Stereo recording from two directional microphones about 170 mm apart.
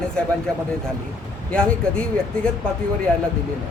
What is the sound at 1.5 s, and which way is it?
Speech, 5° left (ahead or behind).